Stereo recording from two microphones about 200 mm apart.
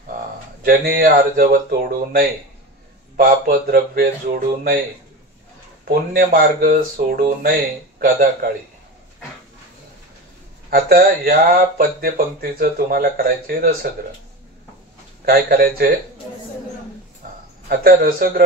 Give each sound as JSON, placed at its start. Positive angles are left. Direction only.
{"t": 0.7, "sound": "speech", "side_deg": -50}
{"t": 5.9, "sound": "speech", "side_deg": -45}
{"t": 10.7, "sound": "speech", "side_deg": -45}
{"t": 15.2, "sound": "speech", "side_deg": -50}
{"t": 17.6, "sound": "speech", "side_deg": -45}